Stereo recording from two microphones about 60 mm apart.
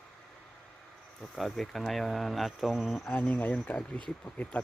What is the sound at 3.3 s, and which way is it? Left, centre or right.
Speech, left.